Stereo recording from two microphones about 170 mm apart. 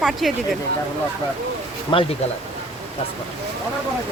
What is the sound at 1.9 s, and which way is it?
Speech, 30° left (ahead or behind).